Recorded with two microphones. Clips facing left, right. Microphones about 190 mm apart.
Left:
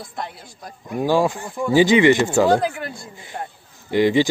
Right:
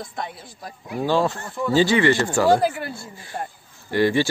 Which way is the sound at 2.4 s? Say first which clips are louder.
Even; 10° right (ahead or behind).